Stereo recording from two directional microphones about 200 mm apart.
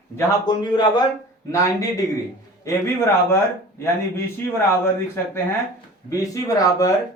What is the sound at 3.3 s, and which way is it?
Speech, 15° left (ahead or behind).